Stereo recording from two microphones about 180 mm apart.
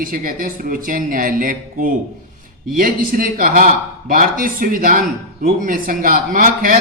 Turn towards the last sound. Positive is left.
turn(degrees=-50)  # may be behind; listen again after turning